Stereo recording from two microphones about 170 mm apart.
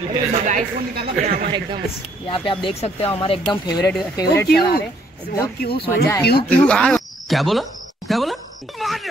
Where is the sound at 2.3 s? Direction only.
30° left (ahead or behind).